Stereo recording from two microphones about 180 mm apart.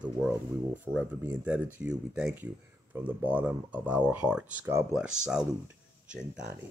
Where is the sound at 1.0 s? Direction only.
5° right (ahead or behind).